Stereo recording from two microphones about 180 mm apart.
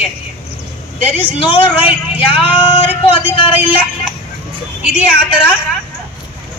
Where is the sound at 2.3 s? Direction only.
30° left (ahead or behind).